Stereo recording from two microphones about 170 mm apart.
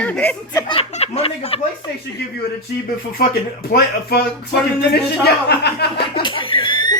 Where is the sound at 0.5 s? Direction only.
30° left (ahead or behind).